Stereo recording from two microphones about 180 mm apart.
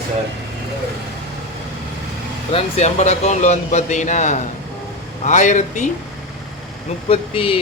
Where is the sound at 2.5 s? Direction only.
40° left (ahead or behind).